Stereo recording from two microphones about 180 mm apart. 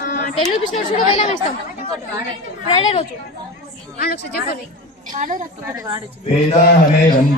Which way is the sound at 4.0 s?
60° left (ahead or behind).